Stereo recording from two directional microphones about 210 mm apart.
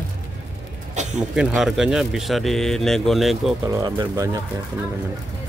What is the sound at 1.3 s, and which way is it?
Speech, centre (ahead or behind).